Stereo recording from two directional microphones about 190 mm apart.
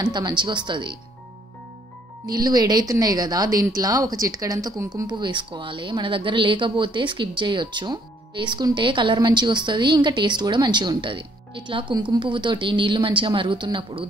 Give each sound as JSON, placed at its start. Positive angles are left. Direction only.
{"t": 0.0, "sound": "speech", "side_deg": -20}
{"t": 2.2, "sound": "speech", "side_deg": -20}